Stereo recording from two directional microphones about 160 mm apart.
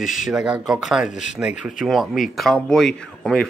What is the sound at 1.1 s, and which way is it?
Speech, 50° left (ahead or behind).